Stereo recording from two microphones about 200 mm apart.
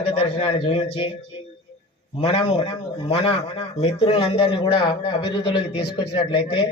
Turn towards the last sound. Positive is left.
turn(degrees=25)  # may be behind; listen again after turning